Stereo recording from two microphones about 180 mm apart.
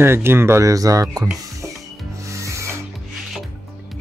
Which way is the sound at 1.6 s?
15° right (ahead or behind).